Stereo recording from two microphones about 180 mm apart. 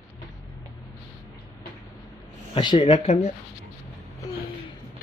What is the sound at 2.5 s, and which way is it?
Speech, 25° left (ahead or behind).